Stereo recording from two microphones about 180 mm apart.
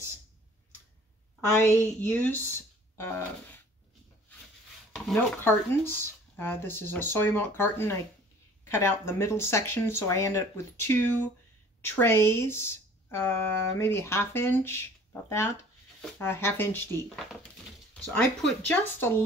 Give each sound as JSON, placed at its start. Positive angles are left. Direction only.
{"t": 1.6, "sound": "speech", "side_deg": 10}
{"t": 3.0, "sound": "a sound", "side_deg": 15}
{"t": 4.9, "sound": "speech", "side_deg": 0}
{"t": 18.7, "sound": "speech", "side_deg": 10}